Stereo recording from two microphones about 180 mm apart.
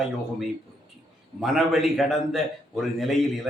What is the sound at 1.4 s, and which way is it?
Speech, centre (ahead or behind).